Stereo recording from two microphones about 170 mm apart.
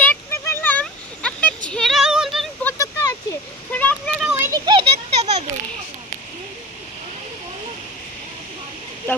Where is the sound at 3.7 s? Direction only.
10° left (ahead or behind).